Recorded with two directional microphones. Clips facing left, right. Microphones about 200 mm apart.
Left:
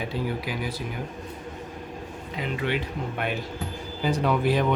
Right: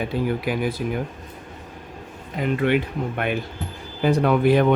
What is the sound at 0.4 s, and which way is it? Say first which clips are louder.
Speech: right 7 dB; 55° right (ahead or behind).